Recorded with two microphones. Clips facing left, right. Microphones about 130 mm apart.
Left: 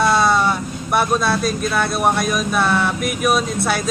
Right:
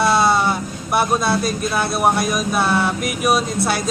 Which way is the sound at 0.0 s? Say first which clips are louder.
Even; 5° right (ahead or behind).